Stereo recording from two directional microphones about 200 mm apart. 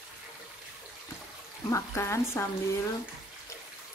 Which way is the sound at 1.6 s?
15° left (ahead or behind).